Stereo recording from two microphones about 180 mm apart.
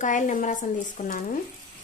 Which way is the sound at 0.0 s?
45° left (ahead or behind).